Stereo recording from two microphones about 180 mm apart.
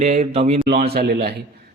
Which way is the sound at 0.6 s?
60° right (ahead or behind).